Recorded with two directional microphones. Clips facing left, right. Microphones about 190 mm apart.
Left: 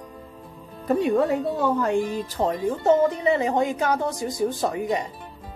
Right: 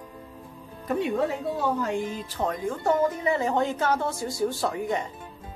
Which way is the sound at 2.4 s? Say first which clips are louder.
Left 5 dB; 25° left (ahead or behind).